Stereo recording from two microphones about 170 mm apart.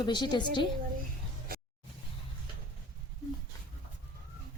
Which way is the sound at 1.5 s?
60° right (ahead or behind).